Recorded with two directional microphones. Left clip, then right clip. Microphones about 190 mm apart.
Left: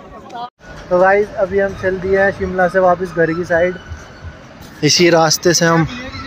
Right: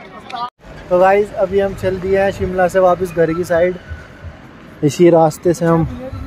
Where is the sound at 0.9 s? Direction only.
10° right (ahead or behind).